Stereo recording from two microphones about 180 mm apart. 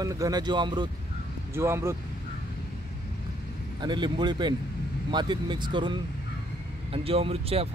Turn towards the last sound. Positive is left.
turn(degrees=-35)  # may be behind; listen again after turning